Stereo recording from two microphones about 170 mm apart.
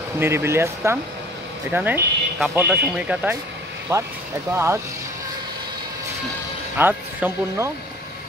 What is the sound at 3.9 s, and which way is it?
Speech, 20° right (ahead or behind).